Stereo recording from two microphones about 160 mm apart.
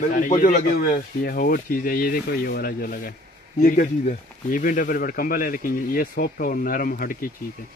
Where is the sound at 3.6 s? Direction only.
55° left (ahead or behind).